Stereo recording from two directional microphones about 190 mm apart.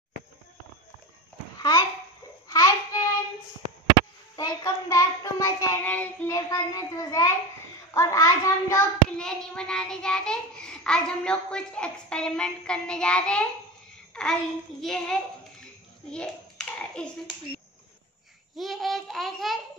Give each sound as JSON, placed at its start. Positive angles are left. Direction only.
{"t": 1.6, "sound": "babbling", "side_deg": 20}
{"t": 2.4, "sound": "child singing", "side_deg": 20}
{"t": 4.4, "sound": "child singing", "side_deg": 20}
{"t": 9.2, "sound": "a child's voice", "side_deg": 5}
{"t": 14.1, "sound": "child singing", "side_deg": 5}
{"t": 14.8, "sound": "a child's voice", "side_deg": 5}
{"t": 16.1, "sound": "a sound", "side_deg": 5}
{"t": 18.6, "sound": "a child's voice", "side_deg": 0}